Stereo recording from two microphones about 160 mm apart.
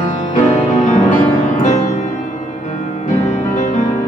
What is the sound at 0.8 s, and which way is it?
Music, 50° left (ahead or behind).